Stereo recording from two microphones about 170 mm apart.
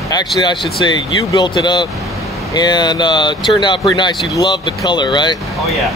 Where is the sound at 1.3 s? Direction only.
25° left (ahead or behind).